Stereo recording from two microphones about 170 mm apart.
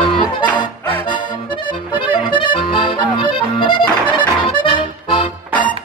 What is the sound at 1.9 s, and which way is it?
Accordion, 30° left (ahead or behind).